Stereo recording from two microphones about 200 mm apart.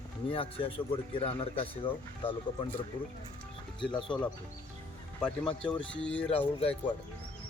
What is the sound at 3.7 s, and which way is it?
Speech, 25° left (ahead or behind).